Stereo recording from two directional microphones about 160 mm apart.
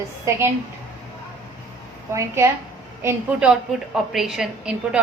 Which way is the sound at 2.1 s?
15° right (ahead or behind).